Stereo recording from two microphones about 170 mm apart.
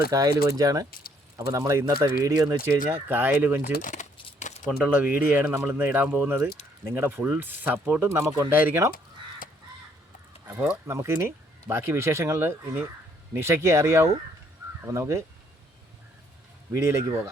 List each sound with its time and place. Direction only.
0.1 s speech: 20° right (ahead or behind)
3.7 s speech: 50° left (ahead or behind)
4.4 s keys jangling: 45° left (ahead or behind)
4.8 s speech: 10° right (ahead or behind)
10.4 s speech: 10° right (ahead or behind)